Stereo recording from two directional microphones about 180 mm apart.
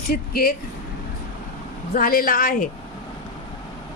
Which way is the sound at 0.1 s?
55° left (ahead or behind).